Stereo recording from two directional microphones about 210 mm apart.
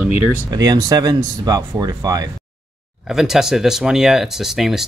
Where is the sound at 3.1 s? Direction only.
Centre (ahead or behind).